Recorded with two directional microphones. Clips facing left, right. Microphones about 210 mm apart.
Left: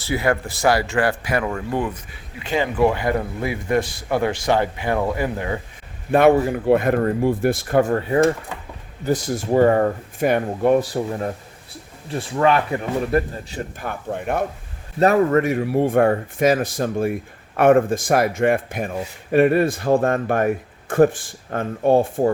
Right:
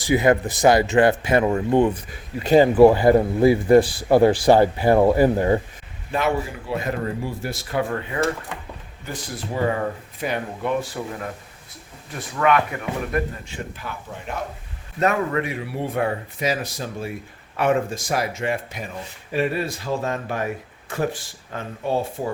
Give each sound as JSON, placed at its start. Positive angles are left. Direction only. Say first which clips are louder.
{"t": 0.0, "sound": "speech", "louder": "right 4 dB", "side_deg": -20}
{"t": 2.4, "sound": "a man's voice", "louder": "right 7 dB", "side_deg": -40}
{"t": 6.1, "sound": "a man's voice", "louder": "left 9 dB", "side_deg": 55}
{"t": 13.7, "sound": "speech", "louder": "left 7 dB", "side_deg": 55}
{"t": 14.9, "sound": "a man's voice", "louder": "left 6 dB", "side_deg": 35}